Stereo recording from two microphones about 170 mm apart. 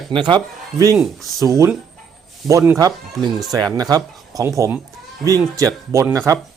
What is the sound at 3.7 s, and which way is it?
Speech, 20° right (ahead or behind).